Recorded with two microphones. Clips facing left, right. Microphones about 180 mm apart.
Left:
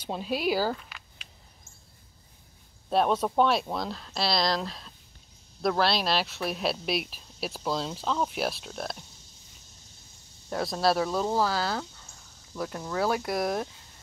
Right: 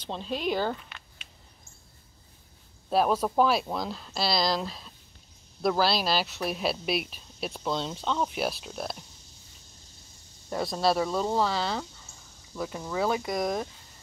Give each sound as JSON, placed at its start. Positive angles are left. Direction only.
{"t": 0.0, "sound": "speech", "side_deg": 10}
{"t": 2.9, "sound": "speech", "side_deg": 0}
{"t": 10.5, "sound": "speech", "side_deg": 0}